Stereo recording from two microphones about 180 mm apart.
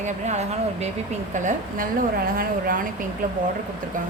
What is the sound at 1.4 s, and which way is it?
A woman's voice, 50° right (ahead or behind).